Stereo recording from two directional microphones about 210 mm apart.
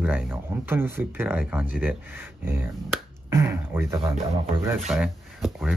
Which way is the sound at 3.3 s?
10° right (ahead or behind).